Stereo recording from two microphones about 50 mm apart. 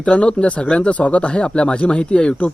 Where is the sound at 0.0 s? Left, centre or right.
Left.